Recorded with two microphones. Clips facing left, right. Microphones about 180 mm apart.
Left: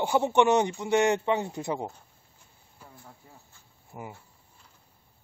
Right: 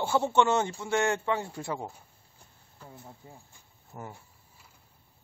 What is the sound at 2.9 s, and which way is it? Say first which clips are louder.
Speech: right 5 dB; 20° right (ahead or behind).